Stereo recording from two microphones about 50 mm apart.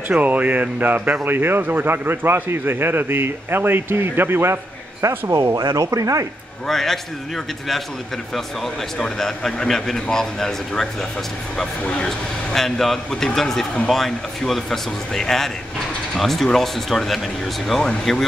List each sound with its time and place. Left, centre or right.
0.2 s a man's voice: right
5.3 s speech: right
6.7 s speech: centre
8.9 s a man's voice: centre
11.8 s speech: left
12.5 s a man's voice: centre